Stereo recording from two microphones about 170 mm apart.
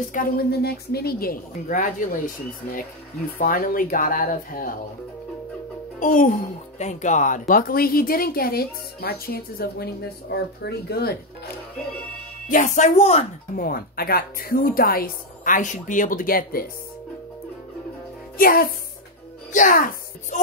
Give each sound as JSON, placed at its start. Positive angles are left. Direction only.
{"t": 0.1, "sound": "a woman's voice", "side_deg": 60}
{"t": 3.3, "sound": "a woman's voice", "side_deg": 55}
{"t": 5.9, "sound": "a woman's voice", "side_deg": 50}
{"t": 12.4, "sound": "speech", "side_deg": 50}
{"t": 13.6, "sound": "a woman's voice", "side_deg": 60}
{"t": 18.4, "sound": "a woman's voice", "side_deg": 60}